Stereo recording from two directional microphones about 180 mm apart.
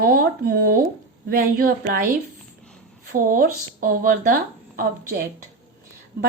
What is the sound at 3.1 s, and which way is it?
A woman's voice, 50° right (ahead or behind).